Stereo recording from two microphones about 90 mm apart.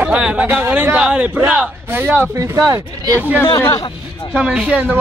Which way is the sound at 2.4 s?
40° right (ahead or behind).